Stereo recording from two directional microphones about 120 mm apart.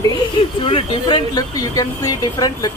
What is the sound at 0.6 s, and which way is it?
Speech, 45° left (ahead or behind).